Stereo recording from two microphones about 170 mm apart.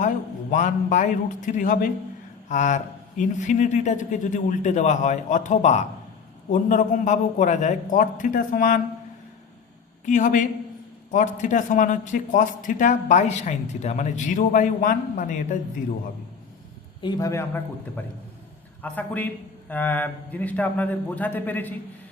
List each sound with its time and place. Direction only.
0.5 s speech: 45° left (ahead or behind)
10.1 s speech: 50° left (ahead or behind)
17.0 s a man's voice: 20° left (ahead or behind)